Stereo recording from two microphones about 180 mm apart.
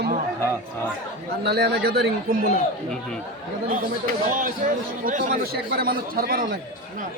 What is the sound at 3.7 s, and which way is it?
A man's voice, 45° right (ahead or behind).